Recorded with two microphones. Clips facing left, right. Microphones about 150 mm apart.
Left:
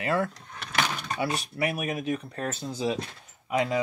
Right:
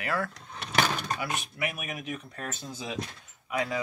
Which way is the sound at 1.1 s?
35° left (ahead or behind).